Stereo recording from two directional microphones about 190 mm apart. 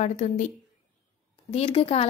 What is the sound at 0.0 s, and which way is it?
Speech, 35° left (ahead or behind).